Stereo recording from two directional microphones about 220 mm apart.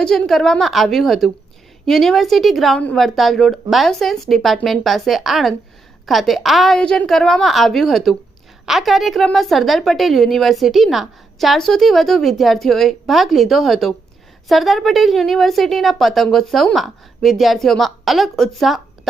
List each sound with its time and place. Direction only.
0.0 s a woman's voice: centre (ahead or behind)